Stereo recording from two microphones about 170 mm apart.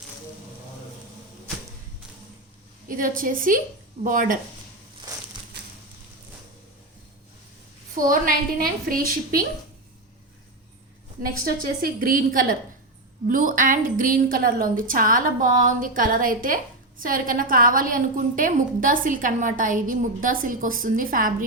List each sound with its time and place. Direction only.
2.9 s a woman's voice: 55° right (ahead or behind)
7.9 s a woman's voice: 55° right (ahead or behind)
11.2 s a woman's voice: 60° right (ahead or behind)